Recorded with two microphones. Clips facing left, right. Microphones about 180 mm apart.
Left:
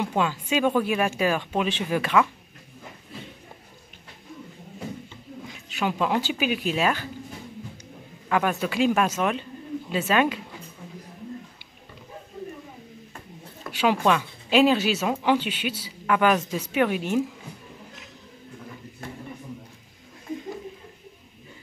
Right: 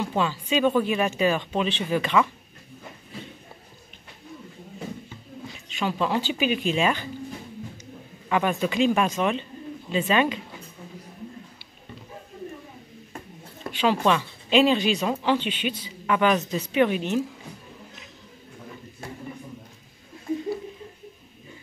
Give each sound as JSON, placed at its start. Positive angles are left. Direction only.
{"t": 0.0, "sound": "speech", "side_deg": 10}
{"t": 5.8, "sound": "speech", "side_deg": 10}
{"t": 8.3, "sound": "speech", "side_deg": 5}
{"t": 13.7, "sound": "speech", "side_deg": 5}